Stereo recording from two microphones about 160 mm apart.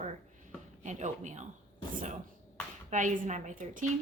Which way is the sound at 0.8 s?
50° right (ahead or behind).